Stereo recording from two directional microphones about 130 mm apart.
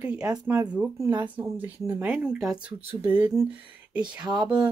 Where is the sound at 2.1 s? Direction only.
5° right (ahead or behind).